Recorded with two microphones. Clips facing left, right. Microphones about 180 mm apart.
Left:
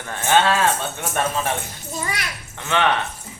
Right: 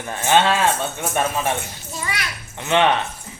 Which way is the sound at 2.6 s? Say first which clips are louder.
Right 4 dB; 20° right (ahead or behind).